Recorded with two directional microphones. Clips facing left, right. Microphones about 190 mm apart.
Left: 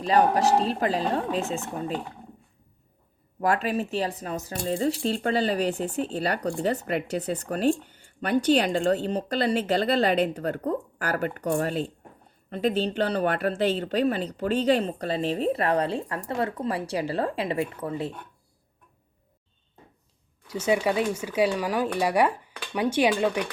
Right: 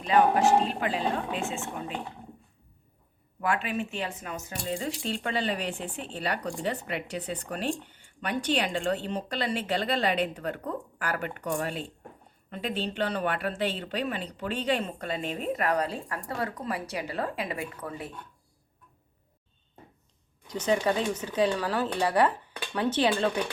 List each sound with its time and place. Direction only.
0.0 s speech: 35° left (ahead or behind)
3.4 s speech: 40° left (ahead or behind)
20.5 s speech: 10° left (ahead or behind)